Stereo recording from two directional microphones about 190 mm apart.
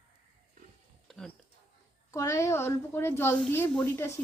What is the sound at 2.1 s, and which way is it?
A woman's voice, 15° left (ahead or behind).